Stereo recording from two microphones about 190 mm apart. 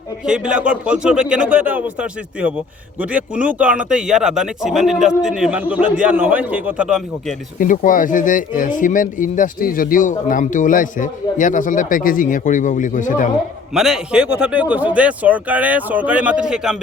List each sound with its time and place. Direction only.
0.3 s a man's voice: 5° right (ahead or behind)
7.6 s speech: 45° left (ahead or behind)
13.7 s speech: 5° right (ahead or behind)